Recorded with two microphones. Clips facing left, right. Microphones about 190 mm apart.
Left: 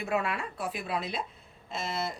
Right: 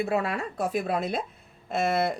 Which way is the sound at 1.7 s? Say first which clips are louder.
Right 9 dB; 60° right (ahead or behind).